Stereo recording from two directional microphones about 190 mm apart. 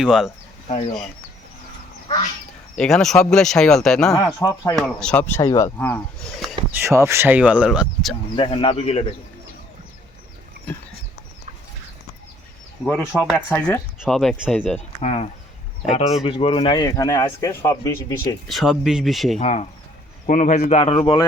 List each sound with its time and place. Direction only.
0.0 s speech: centre (ahead or behind)
0.7 s speech: 35° left (ahead or behind)
2.7 s speech: centre (ahead or behind)
4.1 s speech: 15° left (ahead or behind)
4.7 s speech: 5° left (ahead or behind)
6.7 s speech: 10° right (ahead or behind)
8.4 s speech: 30° left (ahead or behind)
12.8 s speech: 10° left (ahead or behind)
14.0 s speech: centre (ahead or behind)
14.8 s speech: 35° left (ahead or behind); by 18.3 s 15° left (ahead or behind)
18.4 s speech: centre (ahead or behind)
19.4 s speech: 35° left (ahead or behind)
21.0 s speech: 20° left (ahead or behind)